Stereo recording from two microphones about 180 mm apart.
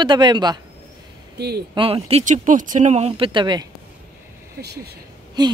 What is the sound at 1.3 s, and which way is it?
Speech, 65° right (ahead or behind).